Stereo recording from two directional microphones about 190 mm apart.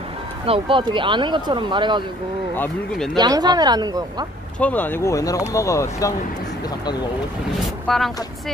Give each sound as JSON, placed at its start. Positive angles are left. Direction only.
{"t": 0.5, "sound": "speech", "side_deg": -25}
{"t": 2.5, "sound": "speech", "side_deg": 10}
{"t": 3.2, "sound": "speech", "side_deg": -20}
{"t": 4.6, "sound": "speech", "side_deg": 10}
{"t": 7.9, "sound": "speech", "side_deg": 0}